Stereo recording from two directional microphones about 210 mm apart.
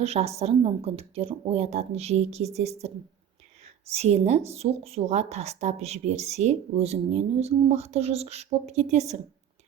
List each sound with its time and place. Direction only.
0.0 s a woman's voice: 30° right (ahead or behind)
3.9 s a woman's voice: 30° right (ahead or behind)